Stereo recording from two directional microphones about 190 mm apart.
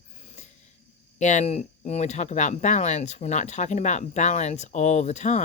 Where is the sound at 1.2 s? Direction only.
40° left (ahead or behind).